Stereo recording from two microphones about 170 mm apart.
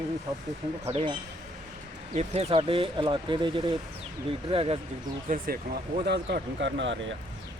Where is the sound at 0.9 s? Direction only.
35° right (ahead or behind).